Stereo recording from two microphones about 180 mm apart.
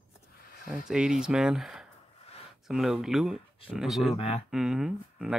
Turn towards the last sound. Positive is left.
turn(degrees=-5)  # may be behind; listen again after turning